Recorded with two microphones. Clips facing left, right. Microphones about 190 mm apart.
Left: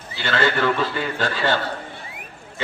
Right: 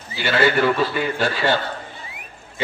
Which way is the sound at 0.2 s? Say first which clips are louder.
Right 3 dB; 10° right (ahead or behind).